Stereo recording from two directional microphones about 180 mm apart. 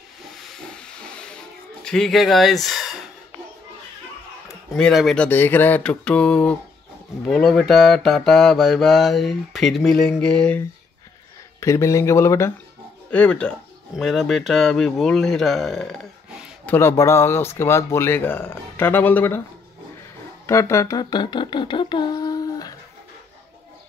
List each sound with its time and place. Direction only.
0.7 s a sound: 5° left (ahead or behind)
4.7 s speech: centre (ahead or behind)
11.6 s speech: 15° left (ahead or behind); by 16.4 s centre (ahead or behind)
16.6 s speech: 15° left (ahead or behind)
20.4 s music: 15° left (ahead or behind)